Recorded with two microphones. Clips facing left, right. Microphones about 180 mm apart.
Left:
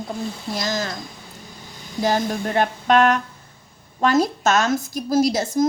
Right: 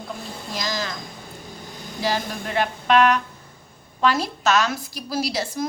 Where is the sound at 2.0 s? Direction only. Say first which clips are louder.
Left 5 dB; 45° left (ahead or behind).